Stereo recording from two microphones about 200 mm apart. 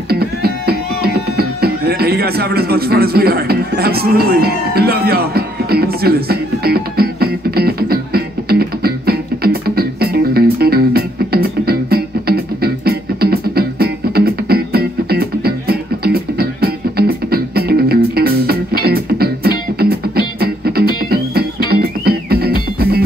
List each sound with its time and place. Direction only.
0.1 s music: 50° right (ahead or behind)